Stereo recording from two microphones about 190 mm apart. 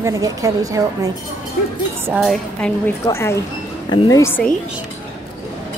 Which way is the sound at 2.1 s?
5° left (ahead or behind).